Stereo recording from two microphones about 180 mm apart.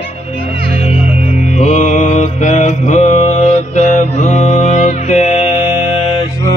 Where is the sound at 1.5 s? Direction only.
40° left (ahead or behind).